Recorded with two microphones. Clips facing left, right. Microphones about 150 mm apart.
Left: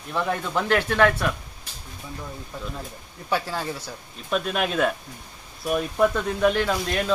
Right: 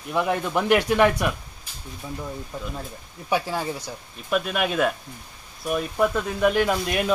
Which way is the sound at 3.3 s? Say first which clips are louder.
Right 2 dB; 15° right (ahead or behind).